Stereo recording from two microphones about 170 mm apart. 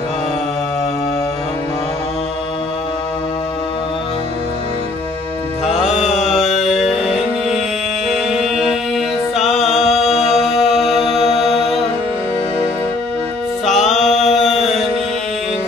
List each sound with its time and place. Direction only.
5.9 s music: 40° left (ahead or behind)
6.2 s music: centre (ahead or behind)
8.3 s music: centre (ahead or behind)
13.7 s music: centre (ahead or behind)
14.3 s mantra: centre (ahead or behind)